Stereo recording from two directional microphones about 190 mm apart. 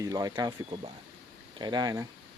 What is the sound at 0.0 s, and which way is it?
Speech, 20° right (ahead or behind).